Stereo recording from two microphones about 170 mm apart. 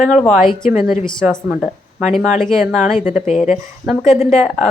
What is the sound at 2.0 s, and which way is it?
Speech, 45° left (ahead or behind).